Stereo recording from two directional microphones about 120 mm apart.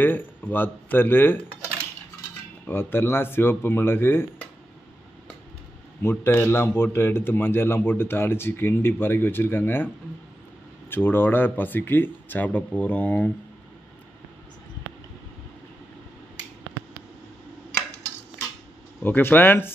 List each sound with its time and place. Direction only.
0.0 s speech: 15° left (ahead or behind)
2.6 s a man's voice: 20° left (ahead or behind)
6.0 s a man's voice: 20° left (ahead or behind)
10.9 s speech: 20° left (ahead or behind)
19.0 s speech: 15° left (ahead or behind)